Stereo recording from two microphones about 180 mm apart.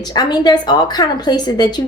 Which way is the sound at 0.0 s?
20° left (ahead or behind).